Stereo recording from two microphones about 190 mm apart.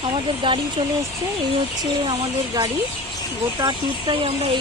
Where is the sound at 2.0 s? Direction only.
25° right (ahead or behind).